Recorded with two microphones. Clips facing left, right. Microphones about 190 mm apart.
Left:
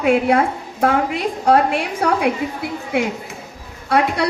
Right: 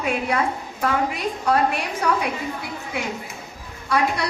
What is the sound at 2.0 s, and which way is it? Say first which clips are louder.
Speech: left 3 dB; 60° left (ahead or behind).